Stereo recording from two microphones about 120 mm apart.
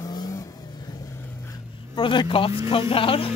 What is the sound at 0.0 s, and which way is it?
Vehicle, 35° left (ahead or behind).